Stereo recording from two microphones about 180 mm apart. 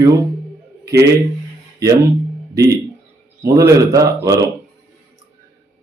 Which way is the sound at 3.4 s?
20° right (ahead or behind).